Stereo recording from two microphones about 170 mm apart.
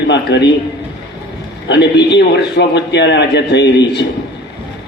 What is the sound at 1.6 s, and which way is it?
A man's voice, 85° left.